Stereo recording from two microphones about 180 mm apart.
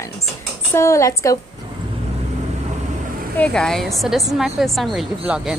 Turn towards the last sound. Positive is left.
turn(degrees=-5)  # may be behind; listen again after turning